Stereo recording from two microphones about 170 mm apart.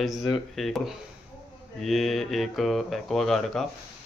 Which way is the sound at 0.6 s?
Centre (ahead or behind).